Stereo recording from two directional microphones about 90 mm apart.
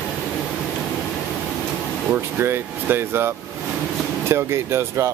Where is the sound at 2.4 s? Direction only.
25° right (ahead or behind).